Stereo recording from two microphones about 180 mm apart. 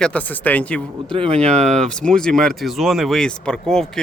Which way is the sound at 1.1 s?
30° right (ahead or behind).